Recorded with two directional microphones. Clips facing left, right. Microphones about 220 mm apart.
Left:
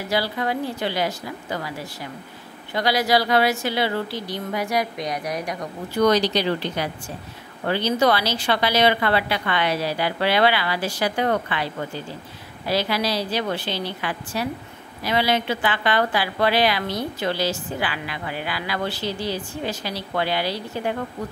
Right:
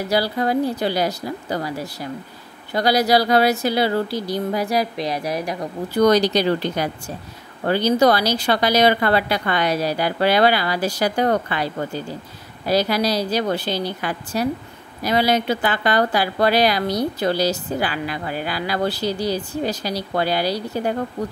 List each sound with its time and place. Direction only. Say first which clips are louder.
0.1 s a woman's voice: right 4 dB; 40° right (ahead or behind)
2.7 s a woman's voice: right 3 dB; 40° right (ahead or behind)
6.0 s a woman's voice: right 3 dB; 45° right (ahead or behind)